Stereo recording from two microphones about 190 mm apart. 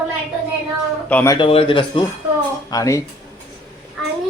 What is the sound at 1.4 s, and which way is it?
Speech, 30° left (ahead or behind).